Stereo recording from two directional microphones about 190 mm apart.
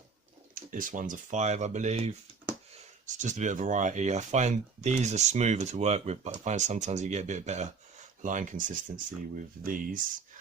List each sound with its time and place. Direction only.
0.5 s speech: 45° right (ahead or behind)